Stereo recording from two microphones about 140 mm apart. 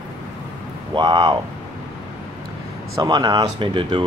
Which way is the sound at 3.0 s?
30° right (ahead or behind).